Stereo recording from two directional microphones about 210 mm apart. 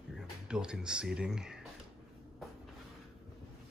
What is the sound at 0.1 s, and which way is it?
Speech, 5° right (ahead or behind).